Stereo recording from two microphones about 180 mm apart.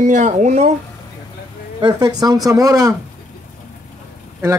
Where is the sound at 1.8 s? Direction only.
20° right (ahead or behind).